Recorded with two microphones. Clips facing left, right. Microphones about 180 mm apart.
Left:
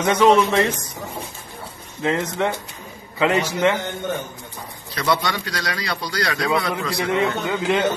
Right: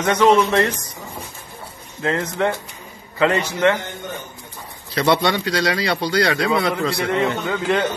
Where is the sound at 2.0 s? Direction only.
20° left (ahead or behind).